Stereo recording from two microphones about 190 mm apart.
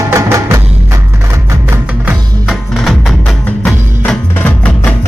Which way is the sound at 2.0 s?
Centre (ahead or behind).